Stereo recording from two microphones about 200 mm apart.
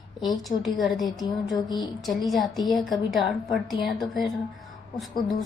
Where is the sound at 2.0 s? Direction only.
Centre (ahead or behind).